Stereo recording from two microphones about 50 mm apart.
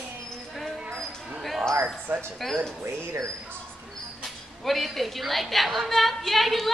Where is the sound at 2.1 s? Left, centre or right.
Right.